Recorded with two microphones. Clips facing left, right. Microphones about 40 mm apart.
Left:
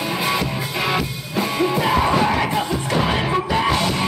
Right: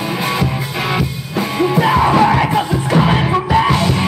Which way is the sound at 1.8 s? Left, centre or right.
Right.